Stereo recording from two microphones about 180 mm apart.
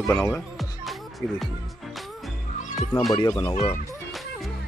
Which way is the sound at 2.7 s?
Centre (ahead or behind).